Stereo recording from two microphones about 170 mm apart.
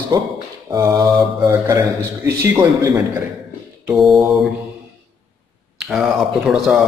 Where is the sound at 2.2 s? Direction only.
15° right (ahead or behind).